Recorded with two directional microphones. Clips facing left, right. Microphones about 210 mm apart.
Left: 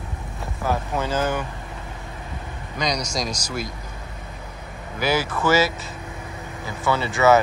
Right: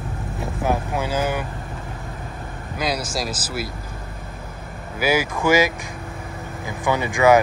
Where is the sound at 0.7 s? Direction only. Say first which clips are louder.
Right 1 dB; 10° right (ahead or behind).